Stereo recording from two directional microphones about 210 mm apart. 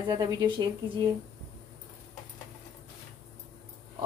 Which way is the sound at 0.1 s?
20° right (ahead or behind).